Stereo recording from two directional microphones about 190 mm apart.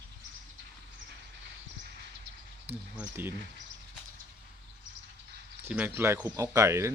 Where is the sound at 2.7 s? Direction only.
10° right (ahead or behind).